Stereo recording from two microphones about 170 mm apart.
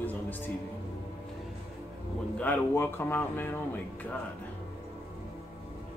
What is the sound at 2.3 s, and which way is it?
Speech, 10° left (ahead or behind).